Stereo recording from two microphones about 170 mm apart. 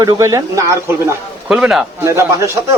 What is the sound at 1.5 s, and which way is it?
Speech, 5° right (ahead or behind).